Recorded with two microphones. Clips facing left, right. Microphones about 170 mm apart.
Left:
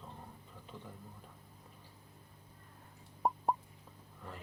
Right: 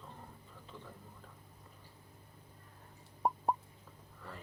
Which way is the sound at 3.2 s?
Centre (ahead or behind).